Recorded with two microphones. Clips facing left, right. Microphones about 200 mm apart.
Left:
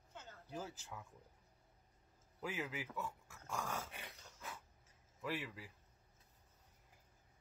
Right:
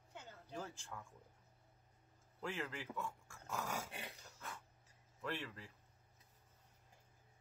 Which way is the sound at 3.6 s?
10° right (ahead or behind).